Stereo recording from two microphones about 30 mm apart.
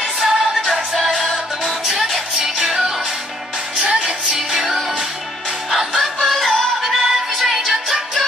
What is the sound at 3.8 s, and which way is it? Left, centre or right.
Music, right.